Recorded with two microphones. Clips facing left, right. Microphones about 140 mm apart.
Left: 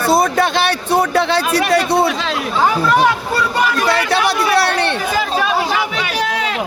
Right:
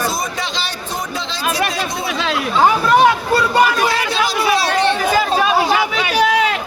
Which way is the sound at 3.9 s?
65° left (ahead or behind).